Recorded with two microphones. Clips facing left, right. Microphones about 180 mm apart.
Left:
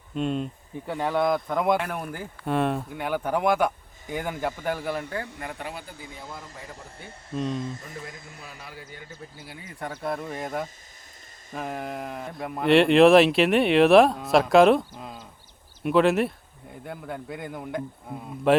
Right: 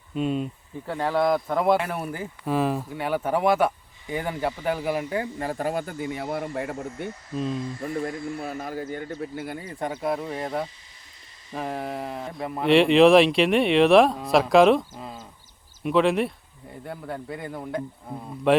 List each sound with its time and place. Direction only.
0.1 s speech: 5° right (ahead or behind)
5.4 s speech: 35° right (ahead or behind)
5.8 s speech: 60° right (ahead or behind)
7.3 s speech: 5° right (ahead or behind)
7.8 s speech: 55° right (ahead or behind)
9.7 s speech: 20° right (ahead or behind)
10.0 s speech: 5° right (ahead or behind)
11.5 s speech: centre (ahead or behind)